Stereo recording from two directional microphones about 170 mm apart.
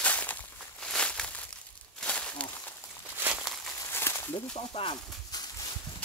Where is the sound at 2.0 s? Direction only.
5° left (ahead or behind).